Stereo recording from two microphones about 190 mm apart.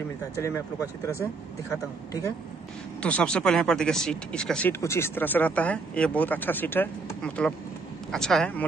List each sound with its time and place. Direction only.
0.4 s speech: 15° left (ahead or behind)
3.0 s speech: 5° left (ahead or behind)